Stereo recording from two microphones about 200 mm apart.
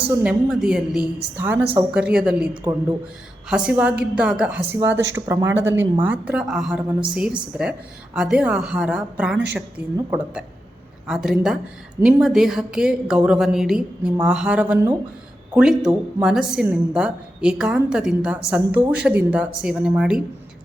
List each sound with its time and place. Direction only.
0.1 s a woman's voice: 5° right (ahead or behind)
3.5 s a woman's voice: 5° right (ahead or behind)